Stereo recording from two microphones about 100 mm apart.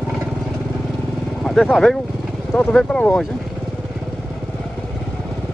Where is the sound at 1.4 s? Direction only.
5° left (ahead or behind).